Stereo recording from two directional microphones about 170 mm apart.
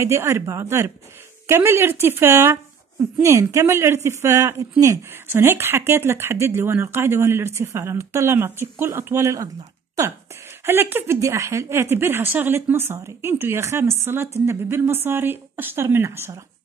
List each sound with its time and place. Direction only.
0.0 s speech: 15° right (ahead or behind)
10.6 s speech: 15° right (ahead or behind)